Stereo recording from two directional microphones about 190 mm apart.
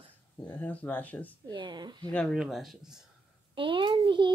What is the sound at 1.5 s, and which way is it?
Speech, 25° right (ahead or behind).